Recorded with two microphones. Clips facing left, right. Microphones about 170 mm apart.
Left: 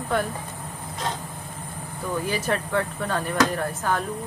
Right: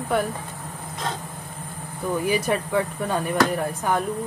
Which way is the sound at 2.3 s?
10° right (ahead or behind).